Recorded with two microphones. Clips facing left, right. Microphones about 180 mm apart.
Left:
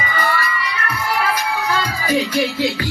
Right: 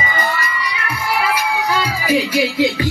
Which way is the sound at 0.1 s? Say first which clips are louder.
Even; 20° right (ahead or behind).